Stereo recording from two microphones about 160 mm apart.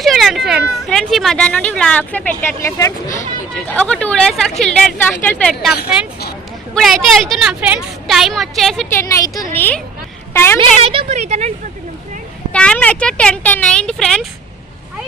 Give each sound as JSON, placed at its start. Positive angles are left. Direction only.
{"t": 0.0, "sound": "speech", "side_deg": 0}
{"t": 3.7, "sound": "speech", "side_deg": 10}
{"t": 6.7, "sound": "speech", "side_deg": 0}
{"t": 8.9, "sound": "a woman's voice", "side_deg": 15}
{"t": 9.6, "sound": "a woman's voice", "side_deg": 10}
{"t": 10.8, "sound": "a woman's voice", "side_deg": -40}
{"t": 12.5, "sound": "speech", "side_deg": 5}